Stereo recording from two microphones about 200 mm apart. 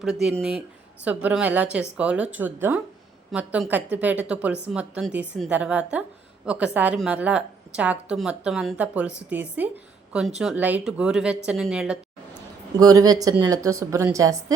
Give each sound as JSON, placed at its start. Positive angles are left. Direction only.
{"t": 0.0, "sound": "a woman's voice", "side_deg": 0}
{"t": 12.8, "sound": "a woman's voice", "side_deg": -20}